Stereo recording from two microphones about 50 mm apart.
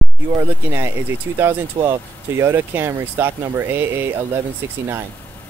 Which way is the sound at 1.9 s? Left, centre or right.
Right.